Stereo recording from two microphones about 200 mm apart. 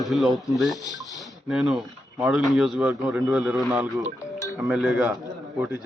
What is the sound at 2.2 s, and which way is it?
A man's voice, centre (ahead or behind).